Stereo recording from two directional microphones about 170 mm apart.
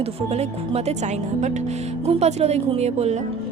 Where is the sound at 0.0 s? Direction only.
35° right (ahead or behind).